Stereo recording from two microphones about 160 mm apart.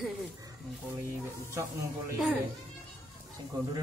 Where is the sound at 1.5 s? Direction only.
20° right (ahead or behind).